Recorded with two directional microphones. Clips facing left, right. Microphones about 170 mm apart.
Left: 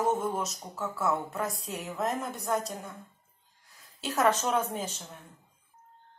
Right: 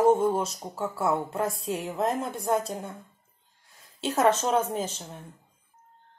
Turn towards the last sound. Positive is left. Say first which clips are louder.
# right 4 dB
turn(degrees=-25)  # may be behind; listen again after turning